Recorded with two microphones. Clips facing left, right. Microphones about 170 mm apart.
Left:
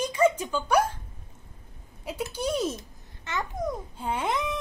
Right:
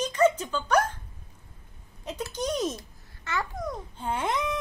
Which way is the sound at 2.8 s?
20° left (ahead or behind).